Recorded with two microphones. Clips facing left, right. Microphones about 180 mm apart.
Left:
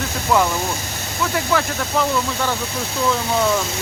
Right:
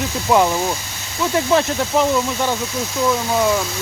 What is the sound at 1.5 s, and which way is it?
Speech, 20° right (ahead or behind).